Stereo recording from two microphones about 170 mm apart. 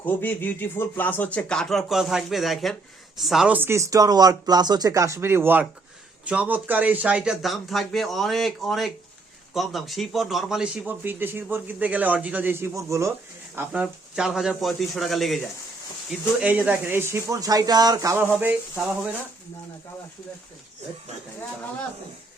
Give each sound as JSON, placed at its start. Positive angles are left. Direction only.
{"t": 0.0, "sound": "speech", "side_deg": 10}
{"t": 13.6, "sound": "speech", "side_deg": -5}